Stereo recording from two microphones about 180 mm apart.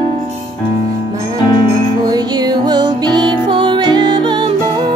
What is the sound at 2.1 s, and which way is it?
Music, 25° right (ahead or behind).